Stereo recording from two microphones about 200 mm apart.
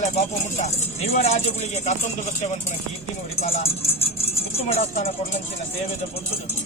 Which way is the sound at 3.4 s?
30° left (ahead or behind).